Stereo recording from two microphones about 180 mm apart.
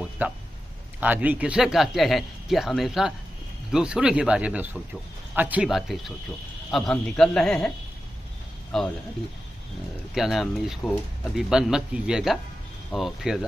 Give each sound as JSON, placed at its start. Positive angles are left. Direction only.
{"t": 0.2, "sound": "speech", "side_deg": -10}
{"t": 8.7, "sound": "speech", "side_deg": 5}
{"t": 10.1, "sound": "speech", "side_deg": 0}